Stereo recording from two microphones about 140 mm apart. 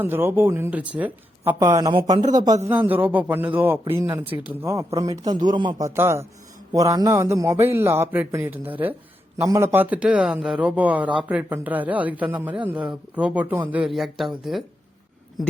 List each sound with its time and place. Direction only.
0.0 s speech: 15° right (ahead or behind)
1.5 s speech: 25° right (ahead or behind)
1.9 s speech: 35° right (ahead or behind)
2.6 s speech: 15° right (ahead or behind); by 5.8 s 30° right (ahead or behind)
5.8 s speech: 20° right (ahead or behind); by 14.6 s centre (ahead or behind)